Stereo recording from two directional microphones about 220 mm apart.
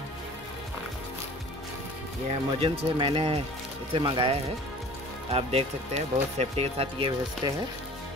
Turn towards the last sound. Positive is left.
turn(degrees=-20)  # may be behind; listen again after turning